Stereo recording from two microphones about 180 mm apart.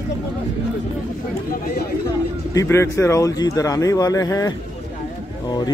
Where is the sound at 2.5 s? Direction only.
15° left (ahead or behind).